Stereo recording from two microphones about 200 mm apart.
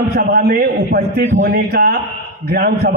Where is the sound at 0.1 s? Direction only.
50° right (ahead or behind).